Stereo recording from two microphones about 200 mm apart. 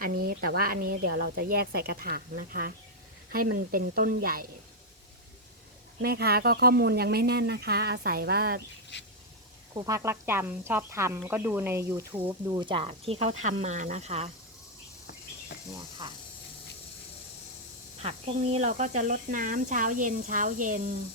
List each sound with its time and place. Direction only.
0.0 s a woman's voice: 50° right (ahead or behind)
6.0 s a woman's voice: 50° right (ahead or behind)
9.7 s speech: 15° right (ahead or behind); by 14.3 s 35° right (ahead or behind)
15.7 s speech: 20° right (ahead or behind)
18.0 s speech: 30° right (ahead or behind)